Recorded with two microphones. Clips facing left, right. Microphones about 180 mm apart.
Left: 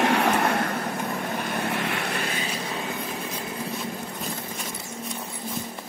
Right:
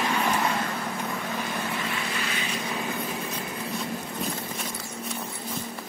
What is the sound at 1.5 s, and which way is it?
Vehicle, 65° left (ahead or behind).